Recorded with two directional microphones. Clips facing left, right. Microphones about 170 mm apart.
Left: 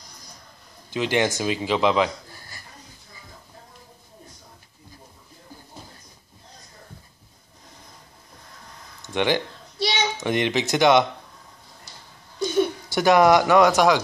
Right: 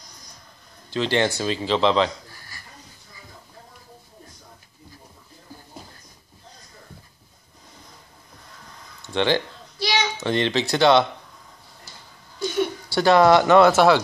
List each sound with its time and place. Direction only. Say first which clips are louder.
0.8 s speech: right 1 dB; 15° left (ahead or behind)
9.0 s a sound: right 1 dB; 15° left (ahead or behind)
12.9 s speech: right 1 dB; 15° left (ahead or behind)